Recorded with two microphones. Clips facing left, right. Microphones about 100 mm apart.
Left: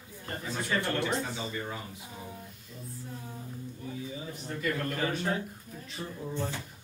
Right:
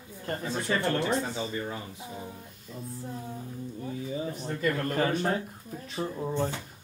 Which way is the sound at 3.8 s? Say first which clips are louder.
Right 6 dB; 40° right (ahead or behind).